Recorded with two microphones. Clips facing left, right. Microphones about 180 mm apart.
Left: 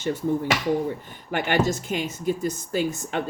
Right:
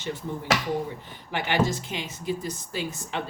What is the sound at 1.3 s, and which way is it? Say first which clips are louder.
Speech: left 2 dB; 50° left (ahead or behind).